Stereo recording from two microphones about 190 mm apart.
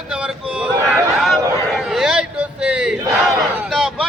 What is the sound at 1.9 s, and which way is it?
Battle cry, 5° right (ahead or behind).